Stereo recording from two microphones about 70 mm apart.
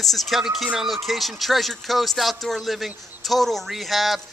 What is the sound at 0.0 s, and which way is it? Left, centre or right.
Speech, centre.